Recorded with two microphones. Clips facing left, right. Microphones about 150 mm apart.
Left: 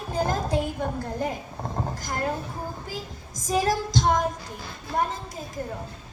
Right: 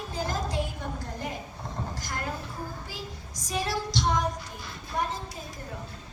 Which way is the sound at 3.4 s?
45° left (ahead or behind).